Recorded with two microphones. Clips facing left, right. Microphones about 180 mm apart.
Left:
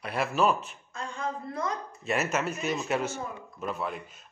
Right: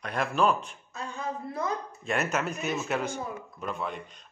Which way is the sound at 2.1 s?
Centre (ahead or behind).